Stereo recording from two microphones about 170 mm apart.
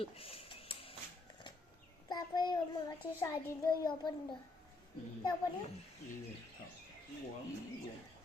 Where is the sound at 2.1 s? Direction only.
25° left (ahead or behind).